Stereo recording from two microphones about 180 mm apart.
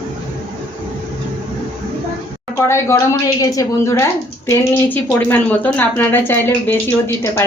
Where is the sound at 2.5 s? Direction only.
15° left (ahead or behind).